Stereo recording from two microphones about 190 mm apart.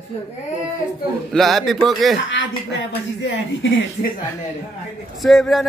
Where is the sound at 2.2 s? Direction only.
80° left.